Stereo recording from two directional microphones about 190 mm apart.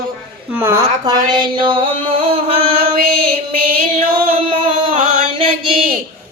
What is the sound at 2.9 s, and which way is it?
Female singing, 50° right (ahead or behind).